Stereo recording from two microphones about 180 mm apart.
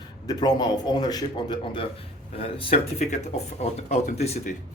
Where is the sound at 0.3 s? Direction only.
20° left (ahead or behind).